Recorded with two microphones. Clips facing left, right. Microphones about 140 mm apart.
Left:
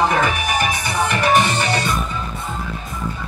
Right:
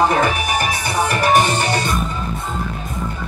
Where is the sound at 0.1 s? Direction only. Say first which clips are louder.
Right 1 dB; 40° right (ahead or behind).